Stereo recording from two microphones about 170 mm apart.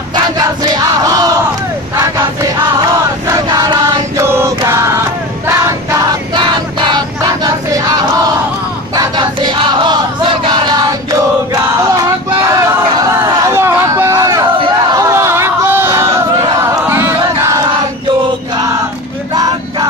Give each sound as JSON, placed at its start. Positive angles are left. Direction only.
{"t": 0.1, "sound": "battle cry", "side_deg": -25}
{"t": 2.7, "sound": "choir", "side_deg": -25}
{"t": 7.4, "sound": "battle cry", "side_deg": -20}
{"t": 8.9, "sound": "a sound", "side_deg": -25}
{"t": 10.4, "sound": "crowd", "side_deg": -25}
{"t": 13.0, "sound": "a sound", "side_deg": -20}
{"t": 19.3, "sound": "vehicle", "side_deg": -25}